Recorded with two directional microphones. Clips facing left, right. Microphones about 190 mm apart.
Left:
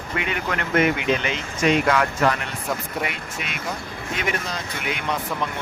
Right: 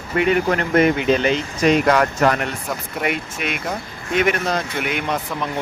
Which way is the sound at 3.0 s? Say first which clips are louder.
Right 6 dB; 60° right (ahead or behind).